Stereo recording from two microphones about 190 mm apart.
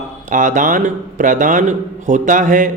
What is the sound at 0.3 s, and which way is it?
A man's voice, 45° right (ahead or behind).